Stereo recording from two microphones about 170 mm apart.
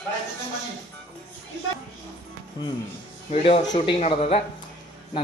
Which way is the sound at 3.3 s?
35° left (ahead or behind).